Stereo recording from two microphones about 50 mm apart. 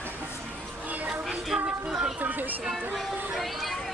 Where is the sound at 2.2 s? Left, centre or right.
Right.